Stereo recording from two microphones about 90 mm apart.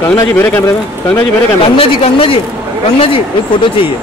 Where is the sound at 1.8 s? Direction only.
90° left.